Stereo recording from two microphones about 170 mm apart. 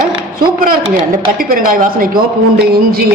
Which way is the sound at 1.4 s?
55° right (ahead or behind).